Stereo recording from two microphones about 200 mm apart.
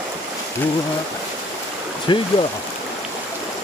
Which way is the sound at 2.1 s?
25° left (ahead or behind).